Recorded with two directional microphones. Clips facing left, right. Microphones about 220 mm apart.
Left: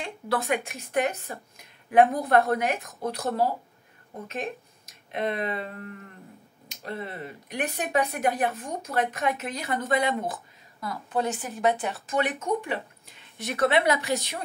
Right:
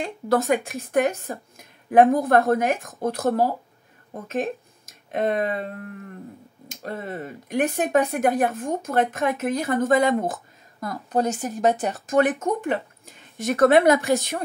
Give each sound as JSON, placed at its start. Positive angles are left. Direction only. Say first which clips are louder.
{"t": 0.0, "sound": "speech", "louder": "right 7 dB", "side_deg": -45}
{"t": 6.7, "sound": "speech", "louder": "right 4 dB", "side_deg": -45}